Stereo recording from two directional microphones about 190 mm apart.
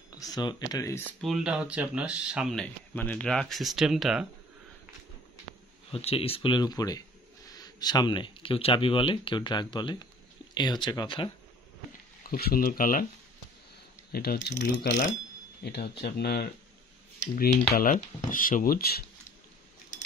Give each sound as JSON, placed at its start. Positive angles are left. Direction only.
{"t": 0.1, "sound": "speech", "side_deg": 20}
{"t": 1.2, "sound": "speech", "side_deg": -5}
{"t": 5.9, "sound": "speech", "side_deg": 30}
{"t": 12.2, "sound": "speech", "side_deg": 50}
{"t": 14.1, "sound": "speech", "side_deg": 55}